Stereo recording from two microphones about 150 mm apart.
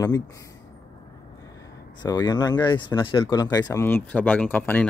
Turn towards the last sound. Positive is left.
turn(degrees=10)  # may be behind; listen again after turning